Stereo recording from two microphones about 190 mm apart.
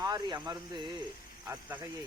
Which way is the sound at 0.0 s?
20° right (ahead or behind).